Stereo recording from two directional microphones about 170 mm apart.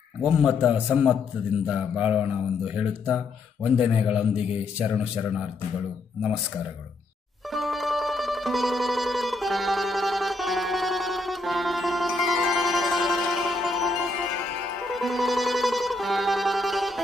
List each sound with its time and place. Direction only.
0.2 s a man's voice: 5° right (ahead or behind)
7.5 s music: centre (ahead or behind)